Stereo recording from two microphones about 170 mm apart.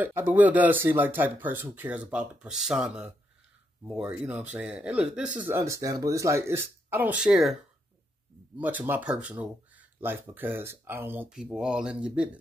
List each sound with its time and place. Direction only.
0.0 s speech: 10° right (ahead or behind)
8.5 s speech: 10° right (ahead or behind)